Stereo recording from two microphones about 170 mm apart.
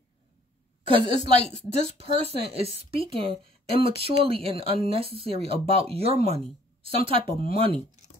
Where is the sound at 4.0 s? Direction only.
35° right (ahead or behind).